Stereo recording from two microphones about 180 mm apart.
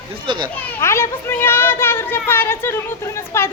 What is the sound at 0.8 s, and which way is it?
Children playing, 15° left (ahead or behind).